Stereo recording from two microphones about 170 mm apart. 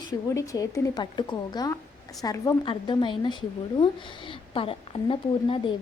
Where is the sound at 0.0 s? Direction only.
20° left (ahead or behind).